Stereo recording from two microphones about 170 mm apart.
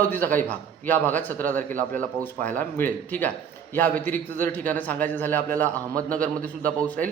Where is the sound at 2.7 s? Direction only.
10° left (ahead or behind).